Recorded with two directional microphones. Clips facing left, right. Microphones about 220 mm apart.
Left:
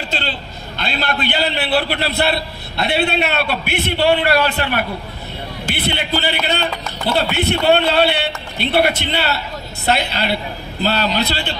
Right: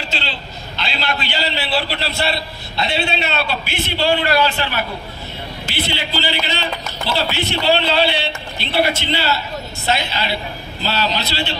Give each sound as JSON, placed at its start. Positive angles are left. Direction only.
{"t": 0.1, "sound": "a man's voice", "side_deg": 50}